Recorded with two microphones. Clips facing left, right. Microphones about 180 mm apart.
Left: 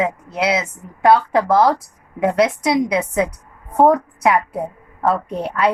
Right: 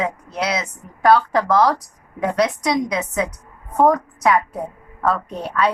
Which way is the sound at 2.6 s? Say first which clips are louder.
Left 3 dB; 5° left (ahead or behind).